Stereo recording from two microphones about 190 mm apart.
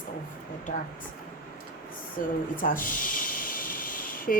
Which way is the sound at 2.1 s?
45° left (ahead or behind).